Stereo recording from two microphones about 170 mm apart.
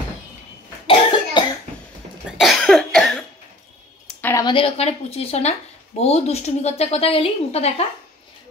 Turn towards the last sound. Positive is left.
turn(degrees=35)  # may be behind; listen again after turning